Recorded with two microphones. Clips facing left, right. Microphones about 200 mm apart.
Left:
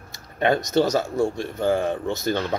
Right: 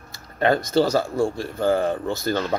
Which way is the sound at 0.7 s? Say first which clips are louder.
Right 1 dB; 20° left (ahead or behind).